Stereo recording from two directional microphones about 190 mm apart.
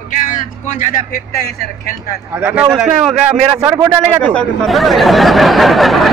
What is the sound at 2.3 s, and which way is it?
Speech, 10° right (ahead or behind).